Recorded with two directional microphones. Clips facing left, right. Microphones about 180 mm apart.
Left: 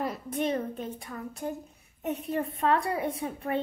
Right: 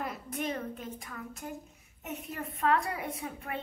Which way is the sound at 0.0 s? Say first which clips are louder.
Left 6 dB; 30° left (ahead or behind).